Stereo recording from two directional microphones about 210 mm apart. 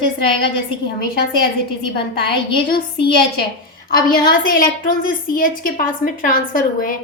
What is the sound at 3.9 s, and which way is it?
A woman's voice, 45° left (ahead or behind).